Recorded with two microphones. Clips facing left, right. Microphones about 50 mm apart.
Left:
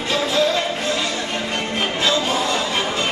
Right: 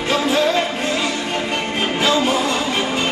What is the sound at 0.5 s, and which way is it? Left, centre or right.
Music, centre.